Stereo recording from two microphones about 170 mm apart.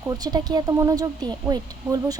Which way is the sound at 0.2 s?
20° right (ahead or behind).